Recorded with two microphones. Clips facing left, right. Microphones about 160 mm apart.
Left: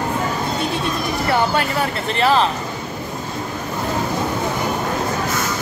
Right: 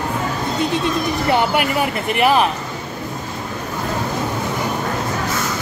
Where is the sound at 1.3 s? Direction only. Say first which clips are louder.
Right 1 dB; 15° right (ahead or behind).